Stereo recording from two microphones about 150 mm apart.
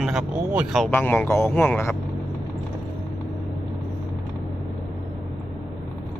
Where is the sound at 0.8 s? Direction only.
15° left (ahead or behind).